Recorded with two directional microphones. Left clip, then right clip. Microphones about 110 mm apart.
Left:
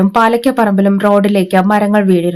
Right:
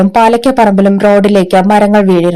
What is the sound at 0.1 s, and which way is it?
Speech, 25° right (ahead or behind).